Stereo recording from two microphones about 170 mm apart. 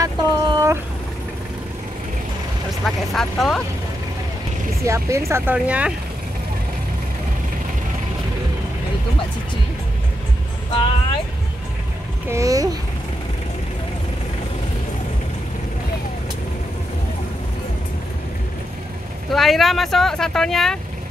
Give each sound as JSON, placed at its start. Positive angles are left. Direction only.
{"t": 0.0, "sound": "a sound", "side_deg": -20}
{"t": 2.8, "sound": "speech", "side_deg": 0}
{"t": 4.8, "sound": "speech", "side_deg": -15}
{"t": 12.3, "sound": "speech", "side_deg": -20}
{"t": 19.3, "sound": "speech", "side_deg": 0}